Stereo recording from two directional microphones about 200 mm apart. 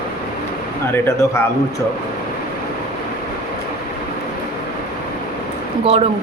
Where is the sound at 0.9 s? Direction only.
10° left (ahead or behind).